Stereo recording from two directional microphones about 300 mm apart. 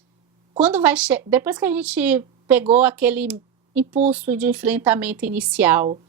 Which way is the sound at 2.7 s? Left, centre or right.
Centre.